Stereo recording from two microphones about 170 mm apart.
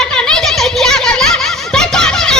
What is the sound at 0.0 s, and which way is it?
Giggle, 5° left (ahead or behind).